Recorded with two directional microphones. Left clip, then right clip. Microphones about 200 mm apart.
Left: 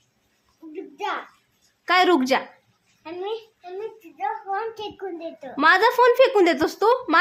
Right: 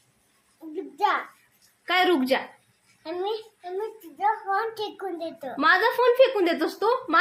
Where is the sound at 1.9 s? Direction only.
35° left (ahead or behind).